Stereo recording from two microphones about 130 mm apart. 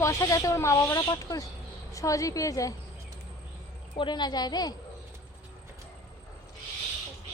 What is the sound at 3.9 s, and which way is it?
Speech, 35° left (ahead or behind).